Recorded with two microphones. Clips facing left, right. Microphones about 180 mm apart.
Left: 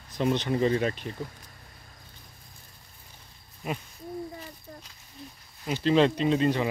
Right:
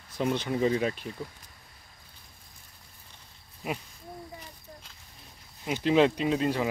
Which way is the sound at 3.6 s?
10° right (ahead or behind).